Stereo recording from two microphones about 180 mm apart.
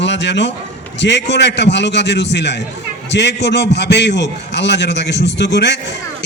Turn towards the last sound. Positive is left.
turn(degrees=75)  # may be behind; listen again after turning